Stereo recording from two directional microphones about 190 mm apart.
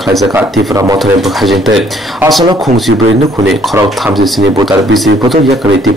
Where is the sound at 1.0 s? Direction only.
Centre (ahead or behind).